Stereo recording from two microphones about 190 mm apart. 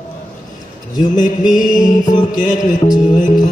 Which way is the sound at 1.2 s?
45° left (ahead or behind).